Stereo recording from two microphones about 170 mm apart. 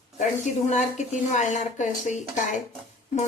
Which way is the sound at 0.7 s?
45° left (ahead or behind).